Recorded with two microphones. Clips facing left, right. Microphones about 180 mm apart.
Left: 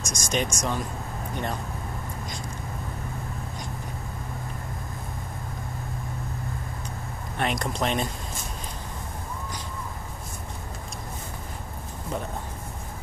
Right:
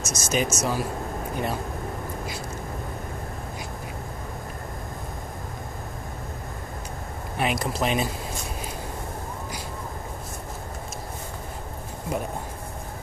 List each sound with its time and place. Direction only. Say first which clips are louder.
0.0 s speech: right 2 dB; 5° right (ahead or behind)
7.3 s speech: right 1 dB; 5° right (ahead or behind)